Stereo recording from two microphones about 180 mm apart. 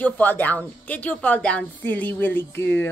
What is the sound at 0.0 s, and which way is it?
A woman's voice, 10° left (ahead or behind).